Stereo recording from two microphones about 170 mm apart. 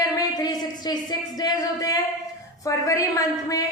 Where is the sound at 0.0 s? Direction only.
20° left (ahead or behind).